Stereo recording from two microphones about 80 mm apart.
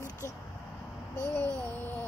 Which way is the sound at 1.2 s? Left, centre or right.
Left.